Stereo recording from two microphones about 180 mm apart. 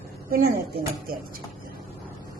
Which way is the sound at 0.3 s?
55° right (ahead or behind).